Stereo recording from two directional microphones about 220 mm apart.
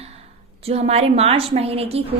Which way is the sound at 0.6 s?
30° right (ahead or behind).